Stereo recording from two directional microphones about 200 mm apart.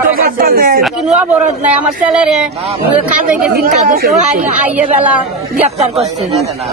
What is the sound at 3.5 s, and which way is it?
Speech, 45° right (ahead or behind).